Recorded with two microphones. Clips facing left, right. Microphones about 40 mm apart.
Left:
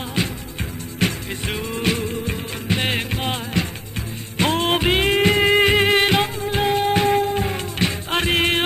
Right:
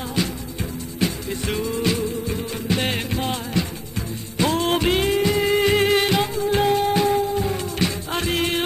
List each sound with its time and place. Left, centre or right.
1.0 s music: left
1.6 s music: left
2.7 s music: left
3.6 s music: left
4.7 s music: left
5.1 s music: left
6.9 s music: left